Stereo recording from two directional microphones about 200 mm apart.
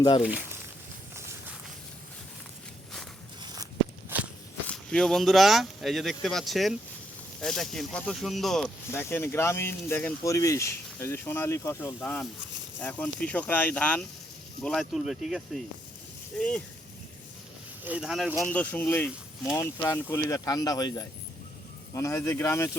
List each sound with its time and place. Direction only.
3.4 s walk: 20° right (ahead or behind)
4.6 s speech: 5° left (ahead or behind)
17.8 s speech: 5° right (ahead or behind); by 22.8 s 15° left (ahead or behind)